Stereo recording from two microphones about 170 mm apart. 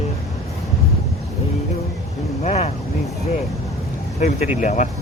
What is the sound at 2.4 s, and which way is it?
Vehicle, 40° left (ahead or behind).